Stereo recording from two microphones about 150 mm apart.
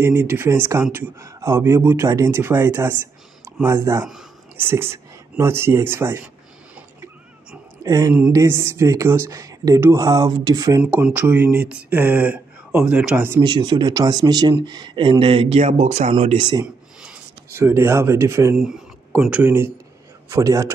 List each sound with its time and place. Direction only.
0.0 s speech: 15° right (ahead or behind)
7.8 s speech: 20° right (ahead or behind)
10.8 s speech: 10° right (ahead or behind)
13.4 s speech: 30° right (ahead or behind); by 16.3 s 45° right (ahead or behind)
16.3 s speech: 30° right (ahead or behind)
17.0 s speech: 10° right (ahead or behind)